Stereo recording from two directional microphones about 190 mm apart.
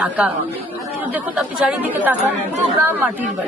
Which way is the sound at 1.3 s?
5° right (ahead or behind).